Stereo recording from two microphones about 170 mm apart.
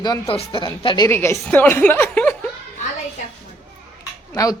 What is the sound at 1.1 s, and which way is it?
Speech, 15° left (ahead or behind).